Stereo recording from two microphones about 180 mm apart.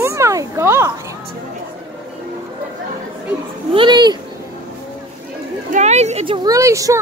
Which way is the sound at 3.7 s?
25° right (ahead or behind).